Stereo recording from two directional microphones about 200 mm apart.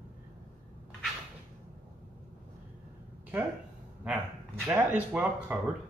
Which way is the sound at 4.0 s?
5° right (ahead or behind).